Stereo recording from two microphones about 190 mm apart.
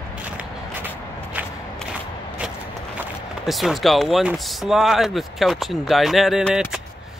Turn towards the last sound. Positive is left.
turn(degrees=-5)  # may be behind; listen again after turning